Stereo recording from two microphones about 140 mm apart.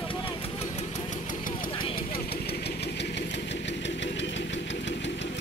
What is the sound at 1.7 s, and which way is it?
Vehicle, 40° left (ahead or behind).